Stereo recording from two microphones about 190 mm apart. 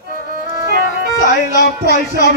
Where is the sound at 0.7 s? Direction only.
55° right (ahead or behind).